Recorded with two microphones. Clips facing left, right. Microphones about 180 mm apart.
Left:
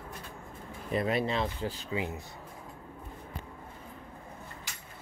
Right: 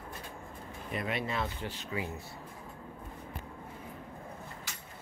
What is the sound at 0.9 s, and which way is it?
Speech, 35° left (ahead or behind).